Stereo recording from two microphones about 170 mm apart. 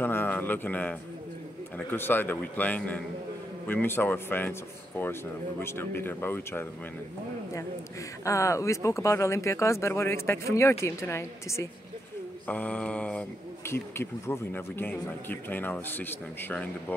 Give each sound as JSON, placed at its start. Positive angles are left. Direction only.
{"t": 0.0, "sound": "speech", "side_deg": 10}
{"t": 8.3, "sound": "speech", "side_deg": 15}